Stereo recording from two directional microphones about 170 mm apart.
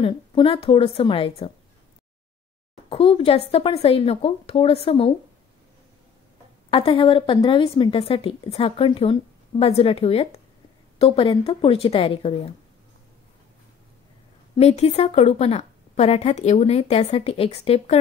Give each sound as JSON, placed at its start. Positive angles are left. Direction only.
{"t": 0.0, "sound": "a woman's voice", "side_deg": 30}
{"t": 2.9, "sound": "a woman's voice", "side_deg": 35}
{"t": 6.7, "sound": "a woman's voice", "side_deg": 30}
{"t": 14.6, "sound": "a woman's voice", "side_deg": 40}